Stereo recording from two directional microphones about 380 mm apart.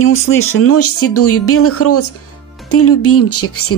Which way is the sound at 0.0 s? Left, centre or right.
Left.